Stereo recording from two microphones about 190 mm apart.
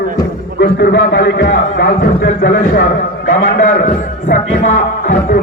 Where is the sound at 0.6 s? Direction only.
60° left (ahead or behind).